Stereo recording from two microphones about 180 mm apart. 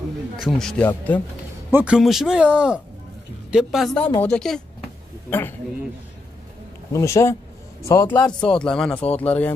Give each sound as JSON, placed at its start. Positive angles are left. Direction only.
{"t": 0.4, "sound": "speech", "side_deg": 5}
{"t": 1.7, "sound": "speech", "side_deg": -10}
{"t": 6.9, "sound": "a man's voice", "side_deg": 15}